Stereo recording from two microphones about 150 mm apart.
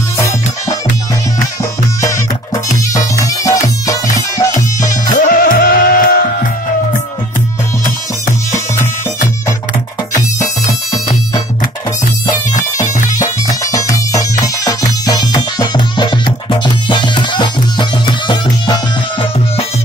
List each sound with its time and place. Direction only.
3.4 s music: 20° left (ahead or behind)
5.2 s music: 70° left (ahead or behind)
13.5 s music: 20° left (ahead or behind)